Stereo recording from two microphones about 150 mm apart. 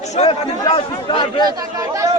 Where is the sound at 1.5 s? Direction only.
25° right (ahead or behind).